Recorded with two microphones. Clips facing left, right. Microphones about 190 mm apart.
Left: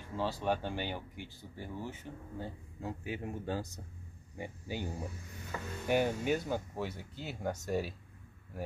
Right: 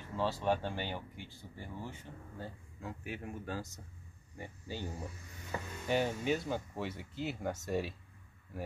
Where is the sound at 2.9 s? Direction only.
25° left (ahead or behind).